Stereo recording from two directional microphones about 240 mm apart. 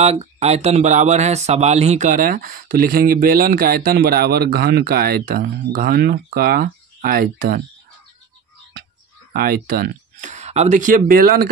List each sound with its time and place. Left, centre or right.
0.0 s speech: right
9.3 s speech: right